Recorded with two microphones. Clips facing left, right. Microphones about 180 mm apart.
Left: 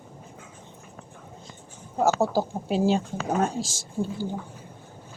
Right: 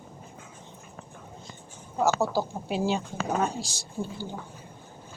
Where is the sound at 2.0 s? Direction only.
50° left (ahead or behind).